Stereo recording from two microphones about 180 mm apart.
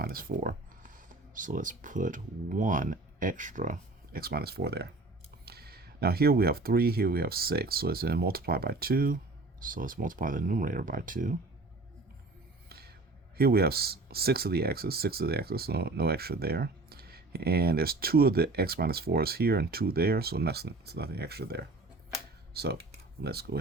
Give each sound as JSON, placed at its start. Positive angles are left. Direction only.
{"t": 0.0, "sound": "speech", "side_deg": -55}
{"t": 12.6, "sound": "music", "side_deg": -60}
{"t": 13.3, "sound": "speech", "side_deg": -60}